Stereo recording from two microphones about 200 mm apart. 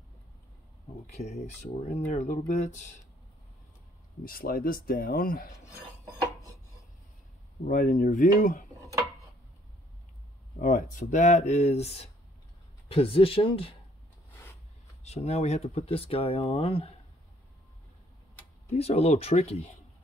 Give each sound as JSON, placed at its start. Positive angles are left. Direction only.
{"t": 1.0, "sound": "speech", "side_deg": 35}
{"t": 4.2, "sound": "speech", "side_deg": 45}
{"t": 7.6, "sound": "speech", "side_deg": 40}
{"t": 10.6, "sound": "speech", "side_deg": 40}
{"t": 15.0, "sound": "speech", "side_deg": 30}
{"t": 18.7, "sound": "speech", "side_deg": 30}